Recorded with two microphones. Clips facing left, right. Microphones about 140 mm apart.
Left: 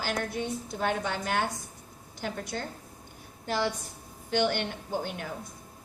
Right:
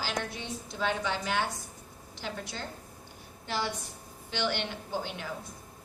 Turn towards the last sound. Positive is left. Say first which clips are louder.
# left 2 dB
turn(degrees=50)  # may be behind; listen again after turning